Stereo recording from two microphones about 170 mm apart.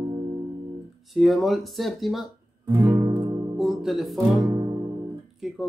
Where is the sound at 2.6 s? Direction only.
30° right (ahead or behind).